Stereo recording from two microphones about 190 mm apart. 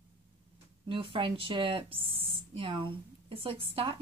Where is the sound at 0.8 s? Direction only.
25° right (ahead or behind).